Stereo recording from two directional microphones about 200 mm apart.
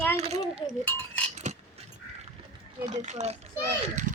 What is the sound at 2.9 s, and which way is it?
Speech, 35° right (ahead or behind).